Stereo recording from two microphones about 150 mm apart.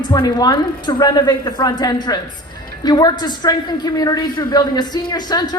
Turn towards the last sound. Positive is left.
turn(degrees=30)  # may be behind; listen again after turning